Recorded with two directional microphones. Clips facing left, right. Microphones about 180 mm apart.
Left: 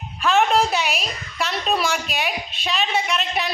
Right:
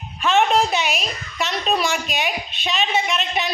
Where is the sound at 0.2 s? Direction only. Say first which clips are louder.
Even; centre (ahead or behind).